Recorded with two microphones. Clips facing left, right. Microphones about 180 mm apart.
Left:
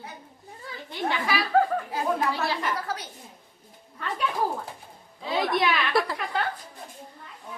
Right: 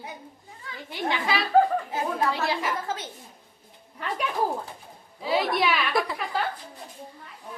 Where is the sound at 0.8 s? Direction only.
20° right (ahead or behind).